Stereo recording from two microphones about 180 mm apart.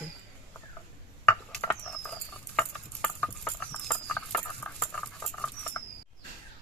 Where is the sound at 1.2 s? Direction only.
10° left (ahead or behind).